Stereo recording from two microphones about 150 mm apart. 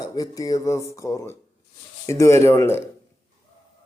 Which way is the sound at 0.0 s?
25° left (ahead or behind).